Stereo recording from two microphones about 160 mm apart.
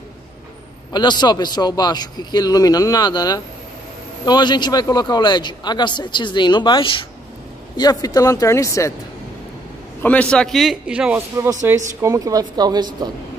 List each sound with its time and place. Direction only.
0.9 s a man's voice: 25° left (ahead or behind)
10.0 s a man's voice: 5° left (ahead or behind); by 13.1 s 25° right (ahead or behind)